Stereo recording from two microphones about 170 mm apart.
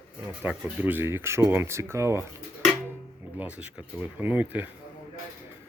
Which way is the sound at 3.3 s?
10° right (ahead or behind).